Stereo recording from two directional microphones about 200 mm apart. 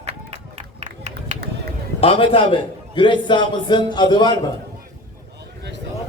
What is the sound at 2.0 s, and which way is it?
A man's voice, 25° left (ahead or behind).